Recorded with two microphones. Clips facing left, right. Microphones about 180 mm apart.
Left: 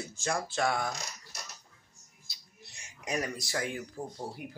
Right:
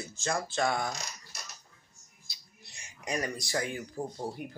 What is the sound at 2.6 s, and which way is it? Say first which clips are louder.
Speech: right 1 dB; 5° left (ahead or behind).